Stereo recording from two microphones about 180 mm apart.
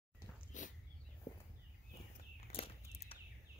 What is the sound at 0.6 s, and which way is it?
Dog, 45° left (ahead or behind).